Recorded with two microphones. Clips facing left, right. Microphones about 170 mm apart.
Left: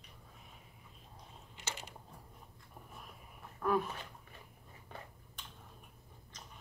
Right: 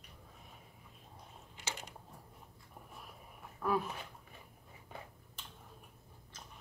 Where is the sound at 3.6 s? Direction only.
5° right (ahead or behind).